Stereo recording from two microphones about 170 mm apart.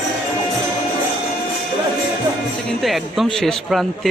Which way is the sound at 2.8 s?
Centre (ahead or behind).